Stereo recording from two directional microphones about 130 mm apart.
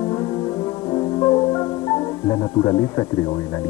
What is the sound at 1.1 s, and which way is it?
Music, 25° left (ahead or behind).